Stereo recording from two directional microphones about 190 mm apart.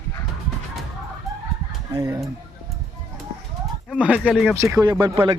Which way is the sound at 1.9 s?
15° right (ahead or behind).